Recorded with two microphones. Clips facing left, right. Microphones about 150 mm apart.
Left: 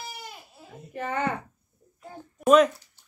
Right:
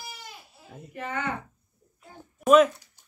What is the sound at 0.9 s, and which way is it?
Speech, 35° left (ahead or behind).